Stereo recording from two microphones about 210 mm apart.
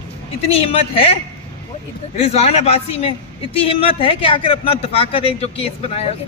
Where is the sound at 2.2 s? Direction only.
30° left (ahead or behind).